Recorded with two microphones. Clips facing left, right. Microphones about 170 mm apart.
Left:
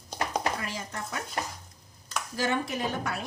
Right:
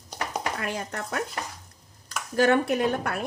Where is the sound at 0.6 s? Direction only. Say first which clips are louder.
Right 5 dB; 60° right (ahead or behind).